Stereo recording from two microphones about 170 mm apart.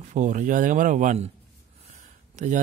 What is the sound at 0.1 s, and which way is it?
Speech, 50° right (ahead or behind).